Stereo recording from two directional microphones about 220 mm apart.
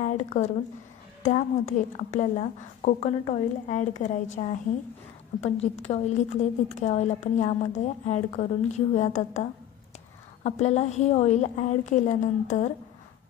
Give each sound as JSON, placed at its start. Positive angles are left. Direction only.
{"t": 0.0, "sound": "a woman's voice", "side_deg": 30}